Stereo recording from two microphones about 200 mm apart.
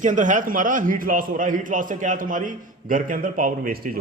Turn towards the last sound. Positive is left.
turn(degrees=-45)  # may be behind; listen again after turning